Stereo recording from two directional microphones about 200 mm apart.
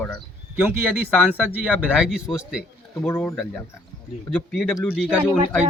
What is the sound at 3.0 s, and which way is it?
Speech, 10° left (ahead or behind).